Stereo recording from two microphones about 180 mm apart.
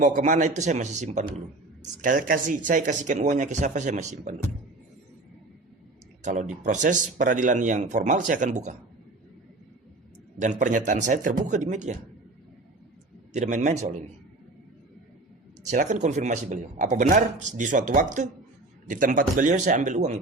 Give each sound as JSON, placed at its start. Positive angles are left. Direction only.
{"t": 0.0, "sound": "speech", "side_deg": -45}
{"t": 6.2, "sound": "speech", "side_deg": -40}
{"t": 10.4, "sound": "speech", "side_deg": -45}
{"t": 13.3, "sound": "speech", "side_deg": -40}
{"t": 15.6, "sound": "speech", "side_deg": -45}